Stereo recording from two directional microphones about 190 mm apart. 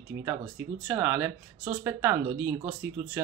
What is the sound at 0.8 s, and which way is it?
Speech, 10° right (ahead or behind).